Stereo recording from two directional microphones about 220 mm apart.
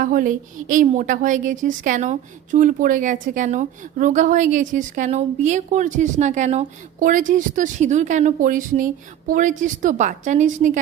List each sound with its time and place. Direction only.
0.0 s a woman's voice: 40° right (ahead or behind)